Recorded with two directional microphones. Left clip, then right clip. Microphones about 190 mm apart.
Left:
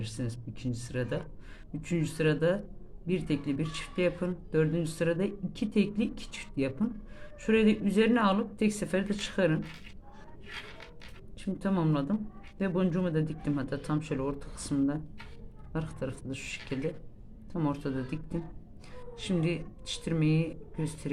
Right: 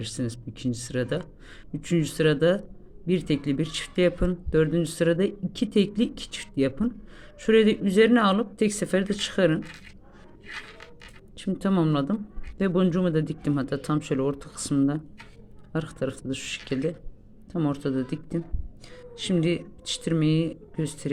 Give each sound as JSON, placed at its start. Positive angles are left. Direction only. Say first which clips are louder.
{"t": 0.0, "sound": "speech", "louder": "right 7 dB", "side_deg": -35}
{"t": 11.3, "sound": "speech", "louder": "right 6 dB", "side_deg": -35}